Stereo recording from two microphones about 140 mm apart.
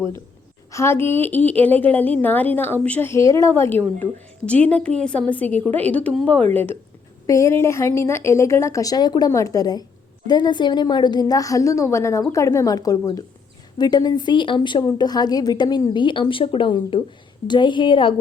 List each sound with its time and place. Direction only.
0.7 s a woman's voice: 20° left (ahead or behind); by 18.1 s 35° left (ahead or behind)